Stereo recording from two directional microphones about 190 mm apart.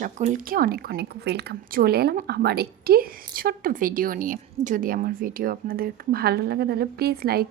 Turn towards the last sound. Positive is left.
turn(degrees=-55)  # may be behind; listen again after turning